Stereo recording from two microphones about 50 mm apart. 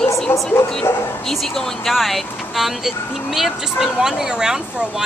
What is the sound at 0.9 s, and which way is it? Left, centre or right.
Speech, left.